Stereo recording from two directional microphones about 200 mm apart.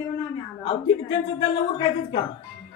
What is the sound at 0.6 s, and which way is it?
A woman's voice, 25° left (ahead or behind).